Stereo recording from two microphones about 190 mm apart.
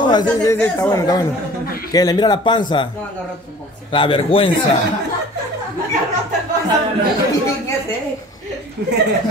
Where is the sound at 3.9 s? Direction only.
25° left (ahead or behind).